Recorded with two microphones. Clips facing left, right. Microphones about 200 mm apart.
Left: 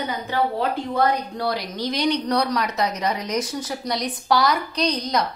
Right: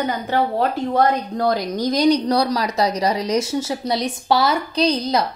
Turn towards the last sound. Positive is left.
turn(degrees=-30)  # may be behind; listen again after turning